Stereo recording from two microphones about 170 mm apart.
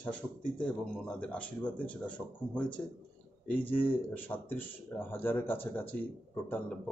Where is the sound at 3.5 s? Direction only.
10° left (ahead or behind).